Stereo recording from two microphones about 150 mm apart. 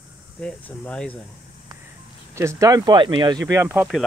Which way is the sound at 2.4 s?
20° right (ahead or behind).